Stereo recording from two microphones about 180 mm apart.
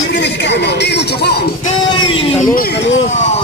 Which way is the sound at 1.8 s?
25° left (ahead or behind).